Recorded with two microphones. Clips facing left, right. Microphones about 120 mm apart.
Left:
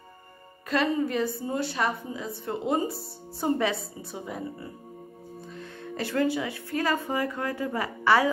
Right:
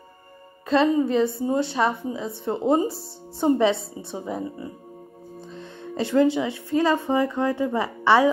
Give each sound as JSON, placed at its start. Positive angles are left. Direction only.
{"t": 0.7, "sound": "a woman's voice", "side_deg": -25}